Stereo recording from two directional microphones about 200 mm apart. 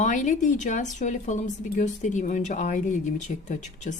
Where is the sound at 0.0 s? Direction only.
40° left (ahead or behind).